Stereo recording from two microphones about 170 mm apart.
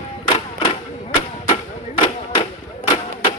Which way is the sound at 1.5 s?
30° left (ahead or behind).